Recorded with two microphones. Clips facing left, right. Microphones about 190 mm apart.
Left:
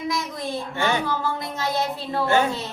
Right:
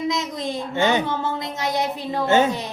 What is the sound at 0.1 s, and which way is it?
Speech, 20° right (ahead or behind).